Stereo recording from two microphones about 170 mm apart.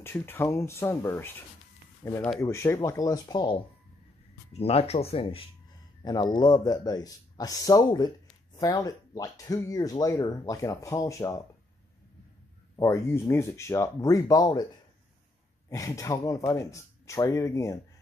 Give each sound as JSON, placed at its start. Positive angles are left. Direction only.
{"t": 0.0, "sound": "speech", "side_deg": 15}
{"t": 4.5, "sound": "speech", "side_deg": 35}
{"t": 12.7, "sound": "speech", "side_deg": 15}
{"t": 15.7, "sound": "speech", "side_deg": 20}